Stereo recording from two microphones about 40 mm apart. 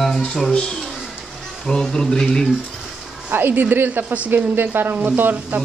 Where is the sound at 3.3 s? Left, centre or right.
Right.